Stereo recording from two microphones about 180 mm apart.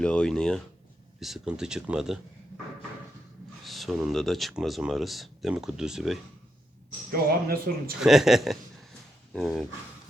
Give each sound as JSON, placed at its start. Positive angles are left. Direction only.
{"t": 0.0, "sound": "speech", "side_deg": 5}
{"t": 3.6, "sound": "speech", "side_deg": 0}
{"t": 7.1, "sound": "speech", "side_deg": -55}
{"t": 8.0, "sound": "speech", "side_deg": 0}